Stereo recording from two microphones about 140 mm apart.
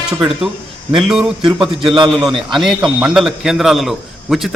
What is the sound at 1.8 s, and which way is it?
Speech, 35° right (ahead or behind).